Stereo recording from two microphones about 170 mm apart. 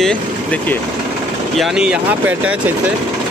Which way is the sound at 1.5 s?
Centre (ahead or behind).